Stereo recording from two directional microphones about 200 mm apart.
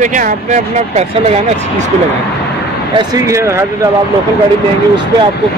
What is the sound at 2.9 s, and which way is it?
Speech, 15° right (ahead or behind).